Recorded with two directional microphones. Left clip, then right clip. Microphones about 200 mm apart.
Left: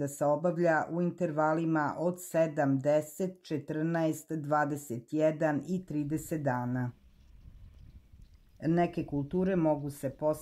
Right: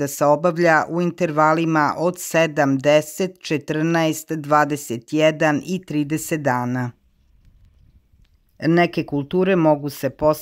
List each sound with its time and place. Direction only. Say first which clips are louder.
0.0 s speech: right 12 dB; 25° right (ahead or behind)
8.5 s speech: right 12 dB; 30° right (ahead or behind)